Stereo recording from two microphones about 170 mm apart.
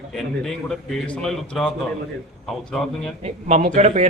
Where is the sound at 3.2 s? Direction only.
45° right (ahead or behind).